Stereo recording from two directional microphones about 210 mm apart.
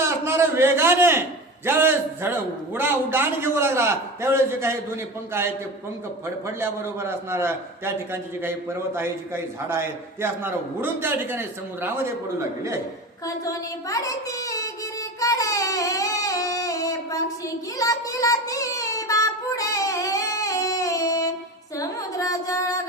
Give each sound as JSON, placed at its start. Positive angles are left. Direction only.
{"t": 0.0, "sound": "a man's voice", "side_deg": -15}
{"t": 6.6, "sound": "a man's voice", "side_deg": -10}
{"t": 13.2, "sound": "speech", "side_deg": 15}
{"t": 15.2, "sound": "child singing", "side_deg": 15}
{"t": 21.8, "sound": "carnatic music", "side_deg": 15}